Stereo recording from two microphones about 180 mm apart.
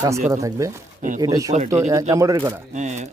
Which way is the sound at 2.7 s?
40° right (ahead or behind).